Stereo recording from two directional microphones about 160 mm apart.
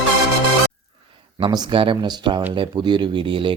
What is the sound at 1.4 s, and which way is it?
Speech, 25° right (ahead or behind).